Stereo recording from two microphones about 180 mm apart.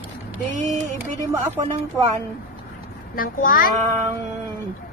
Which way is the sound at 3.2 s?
50° left (ahead or behind).